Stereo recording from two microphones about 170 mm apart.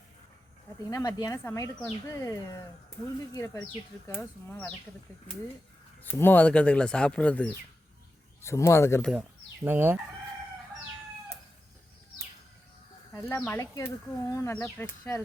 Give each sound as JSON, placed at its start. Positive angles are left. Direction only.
{"t": 0.9, "sound": "speech", "side_deg": 20}
{"t": 4.1, "sound": "speech", "side_deg": 5}
{"t": 6.0, "sound": "speech", "side_deg": 10}
{"t": 9.0, "sound": "speech", "side_deg": 0}
{"t": 9.6, "sound": "chicken", "side_deg": -10}
{"t": 13.1, "sound": "speech", "side_deg": 15}